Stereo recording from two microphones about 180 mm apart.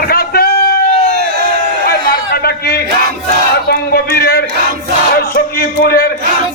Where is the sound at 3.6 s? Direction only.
60° left (ahead or behind).